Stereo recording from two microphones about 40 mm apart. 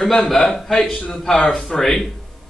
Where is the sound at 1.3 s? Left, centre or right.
Left.